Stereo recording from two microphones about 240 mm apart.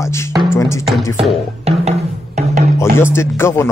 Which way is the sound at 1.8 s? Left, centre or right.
Right.